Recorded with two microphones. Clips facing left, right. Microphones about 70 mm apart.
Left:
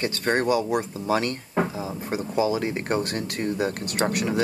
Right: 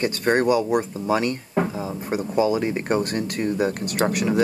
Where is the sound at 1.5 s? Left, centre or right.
Centre.